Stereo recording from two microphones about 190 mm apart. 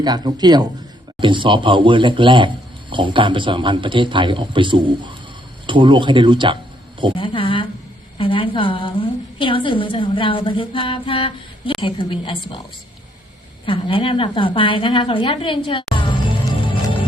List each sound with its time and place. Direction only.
0.0 s a man's voice: 20° right (ahead or behind)
7.2 s a sound: 25° left (ahead or behind)
8.2 s a woman's voice: 30° left (ahead or behind)
13.7 s a woman's voice: 25° left (ahead or behind)